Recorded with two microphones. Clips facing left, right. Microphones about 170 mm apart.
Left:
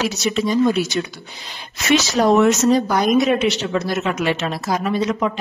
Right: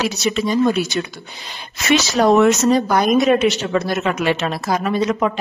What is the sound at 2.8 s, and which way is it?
A woman's voice, 50° right (ahead or behind).